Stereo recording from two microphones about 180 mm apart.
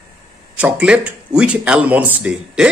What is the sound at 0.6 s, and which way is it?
Speech, 5° right (ahead or behind).